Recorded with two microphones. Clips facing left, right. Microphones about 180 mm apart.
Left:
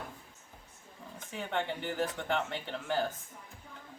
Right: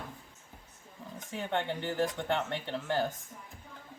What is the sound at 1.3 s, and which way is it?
Speech, 5° left (ahead or behind).